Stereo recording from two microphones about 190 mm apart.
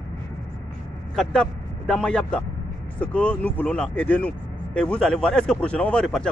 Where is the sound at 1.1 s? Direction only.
5° left (ahead or behind).